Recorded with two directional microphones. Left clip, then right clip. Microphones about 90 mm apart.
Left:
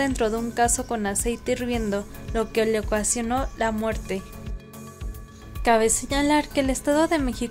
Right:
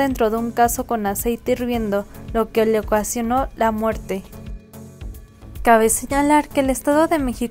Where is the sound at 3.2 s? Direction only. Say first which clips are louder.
Right 6 dB; 20° right (ahead or behind).